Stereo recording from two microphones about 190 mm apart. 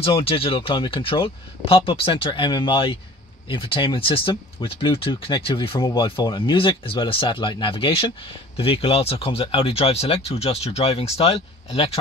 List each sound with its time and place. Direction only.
0.0 s speech: 30° left (ahead or behind)